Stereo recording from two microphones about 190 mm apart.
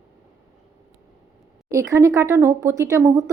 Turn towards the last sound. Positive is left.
turn(degrees=-15)  # may be behind; listen again after turning